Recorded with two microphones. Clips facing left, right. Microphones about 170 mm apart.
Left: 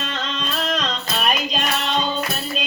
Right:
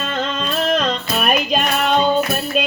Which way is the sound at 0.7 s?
55° right (ahead or behind).